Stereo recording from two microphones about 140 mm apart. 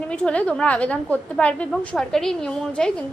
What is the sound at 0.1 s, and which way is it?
A woman's voice, 5° left (ahead or behind).